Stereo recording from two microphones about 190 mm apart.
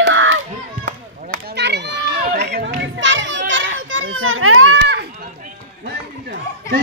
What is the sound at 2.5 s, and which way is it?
Children playing, 60° right (ahead or behind).